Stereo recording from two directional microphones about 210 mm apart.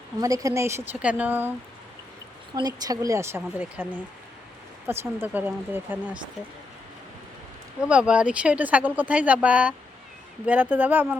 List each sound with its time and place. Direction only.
0.2 s speech: 15° right (ahead or behind)
2.6 s speech: 20° right (ahead or behind)
4.9 s speech: 10° right (ahead or behind)
7.8 s speech: 5° right (ahead or behind)